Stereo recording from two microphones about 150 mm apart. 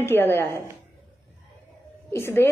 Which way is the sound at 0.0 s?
15° left (ahead or behind).